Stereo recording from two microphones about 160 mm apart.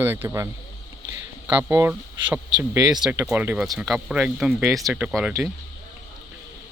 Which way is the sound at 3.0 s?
10° right (ahead or behind).